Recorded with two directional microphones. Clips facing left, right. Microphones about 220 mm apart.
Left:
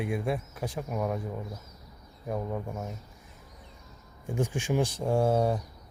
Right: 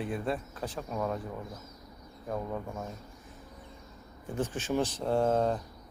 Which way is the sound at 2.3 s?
10° left (ahead or behind).